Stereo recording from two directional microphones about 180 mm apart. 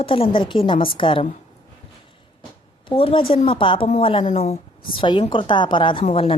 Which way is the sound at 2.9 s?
30° left (ahead or behind).